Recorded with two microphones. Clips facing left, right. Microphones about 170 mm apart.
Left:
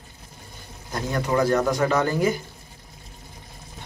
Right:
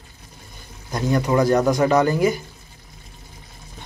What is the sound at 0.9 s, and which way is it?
Speech, 15° right (ahead or behind).